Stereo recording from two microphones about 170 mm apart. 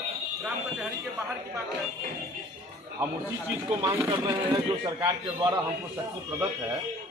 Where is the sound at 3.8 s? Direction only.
15° right (ahead or behind).